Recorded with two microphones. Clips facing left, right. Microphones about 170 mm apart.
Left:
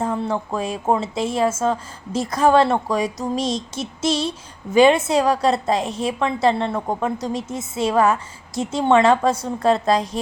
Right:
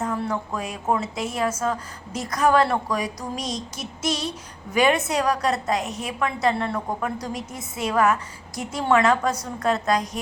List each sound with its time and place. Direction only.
0.0 s a woman's voice: 25° left (ahead or behind)